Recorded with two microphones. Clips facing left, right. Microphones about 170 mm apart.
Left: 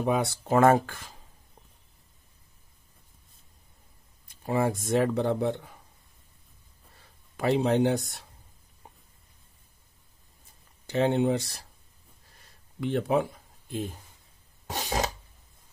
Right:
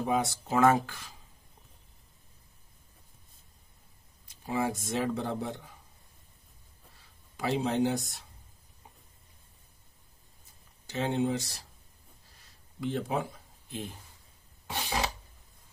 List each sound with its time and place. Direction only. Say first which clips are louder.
0.0 s speech: left 3 dB; 60° left (ahead or behind)
4.5 s speech: left 5 dB; 55° left (ahead or behind)
7.0 s speech: left 5 dB; 60° left (ahead or behind)
10.9 s speech: left 5 dB; 65° left (ahead or behind)
12.8 s speech: left 6 dB; 65° left (ahead or behind)
14.7 s a sound: left 3 dB; 45° left (ahead or behind)